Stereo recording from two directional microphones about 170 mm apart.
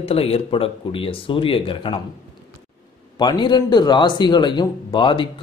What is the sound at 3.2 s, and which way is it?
A man's voice, 25° left (ahead or behind).